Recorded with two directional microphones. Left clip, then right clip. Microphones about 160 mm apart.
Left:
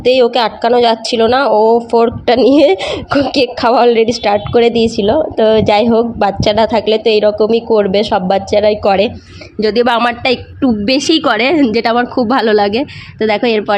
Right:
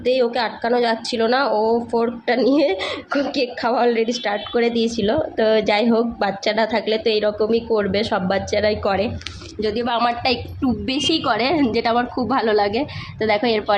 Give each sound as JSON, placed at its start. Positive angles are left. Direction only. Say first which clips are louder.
{"t": 0.0, "sound": "a woman's voice", "louder": "left 9 dB", "side_deg": 45}
{"t": 9.6, "sound": "speech", "louder": "left 10 dB", "side_deg": 45}
{"t": 10.0, "sound": "a woman's voice", "louder": "left 6 dB", "side_deg": 25}